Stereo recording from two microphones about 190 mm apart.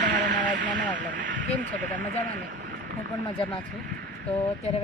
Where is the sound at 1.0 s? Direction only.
45° right (ahead or behind).